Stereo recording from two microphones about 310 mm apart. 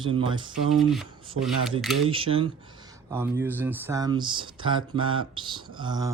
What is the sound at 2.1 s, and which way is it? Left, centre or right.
Speech, centre.